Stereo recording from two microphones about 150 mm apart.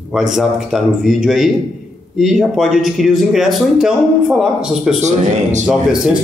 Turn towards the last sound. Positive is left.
turn(degrees=-5)  # may be behind; listen again after turning